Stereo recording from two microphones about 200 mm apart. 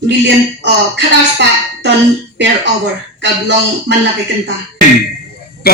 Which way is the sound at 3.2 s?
60° right (ahead or behind).